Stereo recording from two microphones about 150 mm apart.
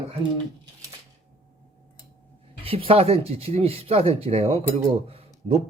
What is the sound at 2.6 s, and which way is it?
Speech, 40° right (ahead or behind).